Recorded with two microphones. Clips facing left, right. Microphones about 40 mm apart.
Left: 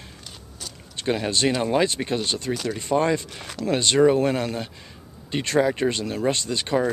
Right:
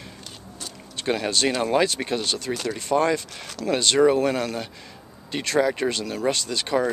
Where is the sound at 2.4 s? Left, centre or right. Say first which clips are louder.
Left 1 dB; centre.